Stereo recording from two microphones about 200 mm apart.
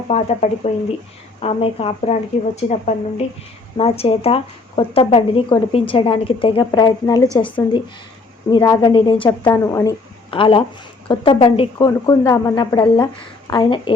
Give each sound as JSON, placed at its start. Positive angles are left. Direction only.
{"t": 0.1, "sound": "a woman's voice", "side_deg": 35}
{"t": 9.5, "sound": "a woman's voice", "side_deg": 15}
{"t": 10.3, "sound": "a woman's voice", "side_deg": 25}